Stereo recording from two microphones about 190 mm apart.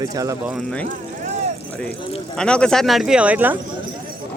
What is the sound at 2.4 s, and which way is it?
Speech, 5° left (ahead or behind).